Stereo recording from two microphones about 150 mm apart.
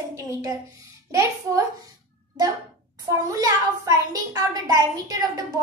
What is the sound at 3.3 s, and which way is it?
A child's voice, 25° right (ahead or behind).